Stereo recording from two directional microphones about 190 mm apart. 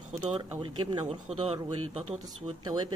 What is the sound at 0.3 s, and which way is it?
Speech, 25° right (ahead or behind).